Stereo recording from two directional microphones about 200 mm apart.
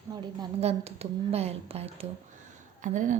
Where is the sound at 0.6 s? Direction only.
30° right (ahead or behind).